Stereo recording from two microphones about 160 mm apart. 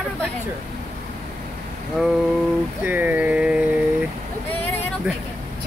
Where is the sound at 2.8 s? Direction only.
10° right (ahead or behind).